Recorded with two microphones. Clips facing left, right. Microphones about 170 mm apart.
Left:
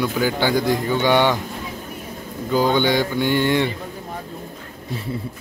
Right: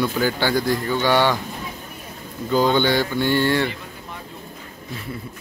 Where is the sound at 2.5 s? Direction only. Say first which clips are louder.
Even; 10° left (ahead or behind).